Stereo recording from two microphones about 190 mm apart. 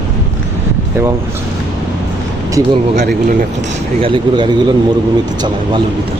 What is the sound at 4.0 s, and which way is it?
Speech, 25° right (ahead or behind).